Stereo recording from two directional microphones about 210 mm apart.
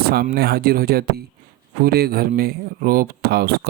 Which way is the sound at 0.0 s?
50° right (ahead or behind).